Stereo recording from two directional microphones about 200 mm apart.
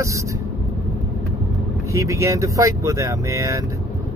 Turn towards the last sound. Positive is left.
turn(degrees=-15)  # may be behind; listen again after turning